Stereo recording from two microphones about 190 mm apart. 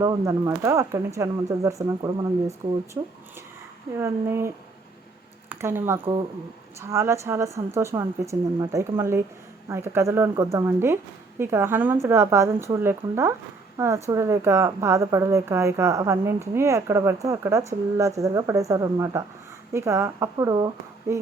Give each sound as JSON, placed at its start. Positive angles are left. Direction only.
{"t": 0.0, "sound": "a woman's voice", "side_deg": -20}